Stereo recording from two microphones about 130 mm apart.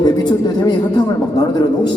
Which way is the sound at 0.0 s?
35° left (ahead or behind).